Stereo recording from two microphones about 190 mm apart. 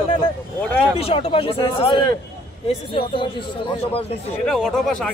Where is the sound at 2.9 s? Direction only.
25° left (ahead or behind).